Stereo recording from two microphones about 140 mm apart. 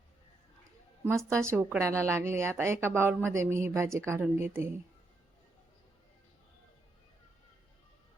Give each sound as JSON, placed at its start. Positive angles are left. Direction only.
{"t": 1.0, "sound": "a woman's voice", "side_deg": -20}